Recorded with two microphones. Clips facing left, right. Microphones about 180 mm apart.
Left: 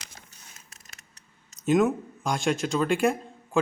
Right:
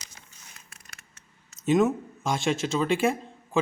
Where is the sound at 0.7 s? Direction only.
40° left (ahead or behind).